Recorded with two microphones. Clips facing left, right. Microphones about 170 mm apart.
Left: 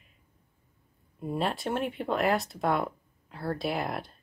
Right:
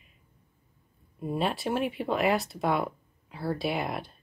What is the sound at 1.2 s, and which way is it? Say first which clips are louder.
Speech: right 1 dB; centre (ahead or behind).